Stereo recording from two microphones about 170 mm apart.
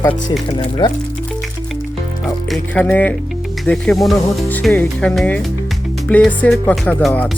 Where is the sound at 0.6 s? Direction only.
25° left (ahead or behind).